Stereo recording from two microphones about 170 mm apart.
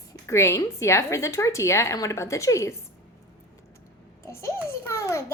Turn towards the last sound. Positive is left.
turn(degrees=15)  # may be behind; listen again after turning